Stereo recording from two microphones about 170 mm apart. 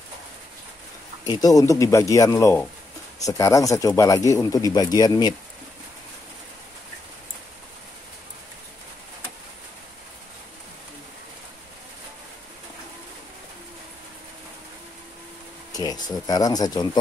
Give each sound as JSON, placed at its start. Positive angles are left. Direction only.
{"t": 1.2, "sound": "speech", "side_deg": 20}
{"t": 15.7, "sound": "a sound", "side_deg": 20}
{"t": 16.3, "sound": "speech", "side_deg": 20}